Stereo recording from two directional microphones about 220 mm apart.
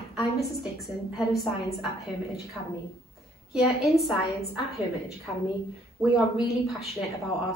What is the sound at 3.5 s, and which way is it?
Speech, centre (ahead or behind).